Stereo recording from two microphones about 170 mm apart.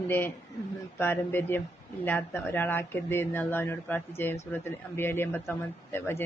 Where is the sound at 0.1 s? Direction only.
15° left (ahead or behind).